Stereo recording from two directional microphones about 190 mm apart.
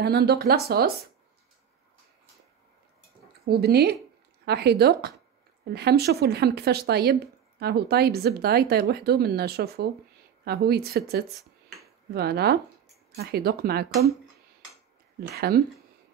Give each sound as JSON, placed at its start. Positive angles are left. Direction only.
{"t": 0.0, "sound": "speech", "side_deg": -60}
{"t": 3.4, "sound": "speech", "side_deg": -55}
{"t": 15.1, "sound": "speech", "side_deg": -55}